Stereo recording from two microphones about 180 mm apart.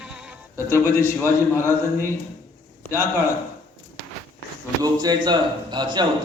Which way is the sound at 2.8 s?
15° left (ahead or behind).